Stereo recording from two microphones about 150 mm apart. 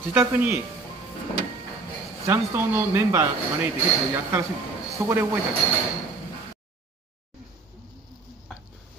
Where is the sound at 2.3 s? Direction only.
15° right (ahead or behind).